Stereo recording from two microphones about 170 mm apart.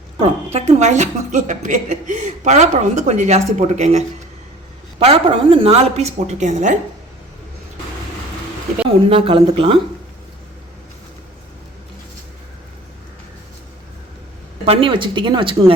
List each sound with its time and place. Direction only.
0.2 s a woman's voice: 40° right (ahead or behind)
9.0 s speech: 35° right (ahead or behind)
14.6 s a woman's voice: 35° right (ahead or behind)